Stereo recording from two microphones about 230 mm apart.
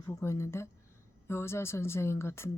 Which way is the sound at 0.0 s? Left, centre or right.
Centre.